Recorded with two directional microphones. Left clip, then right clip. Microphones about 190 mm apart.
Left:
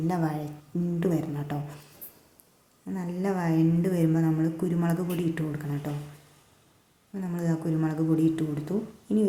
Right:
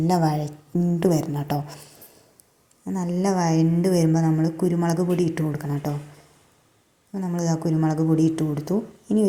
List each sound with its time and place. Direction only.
0.1 s a woman's voice: 30° right (ahead or behind)
2.8 s a woman's voice: 25° right (ahead or behind)
7.1 s a woman's voice: 25° right (ahead or behind)